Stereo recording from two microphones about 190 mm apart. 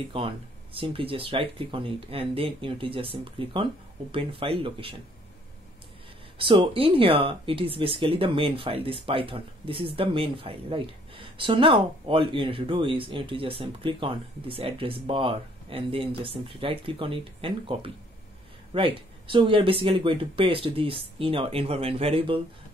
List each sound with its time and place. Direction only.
0.1 s speech: 30° right (ahead or behind)
6.3 s speech: 25° right (ahead or behind)